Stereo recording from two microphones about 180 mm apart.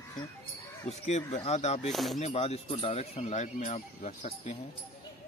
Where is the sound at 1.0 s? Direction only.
35° left (ahead or behind).